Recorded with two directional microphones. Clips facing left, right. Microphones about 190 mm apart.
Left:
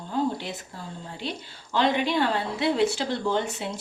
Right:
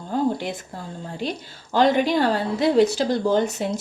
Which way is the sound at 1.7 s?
45° right (ahead or behind).